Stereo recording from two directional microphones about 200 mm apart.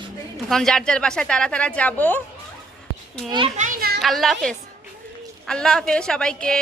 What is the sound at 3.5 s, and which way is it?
Children playing, 40° right (ahead or behind).